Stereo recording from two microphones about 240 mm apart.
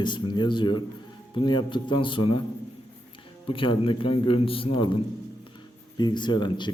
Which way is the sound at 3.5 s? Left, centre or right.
Left.